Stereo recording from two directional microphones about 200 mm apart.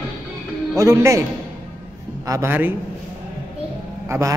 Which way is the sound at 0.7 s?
15° right (ahead or behind).